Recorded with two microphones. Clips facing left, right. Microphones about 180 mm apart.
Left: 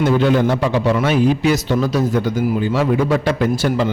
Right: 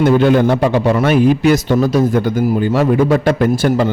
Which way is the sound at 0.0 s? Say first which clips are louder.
Right 4 dB; 55° right (ahead or behind).